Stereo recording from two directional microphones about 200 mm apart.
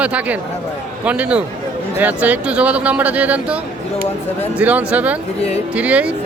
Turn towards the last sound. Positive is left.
turn(degrees=-5)  # may be behind; listen again after turning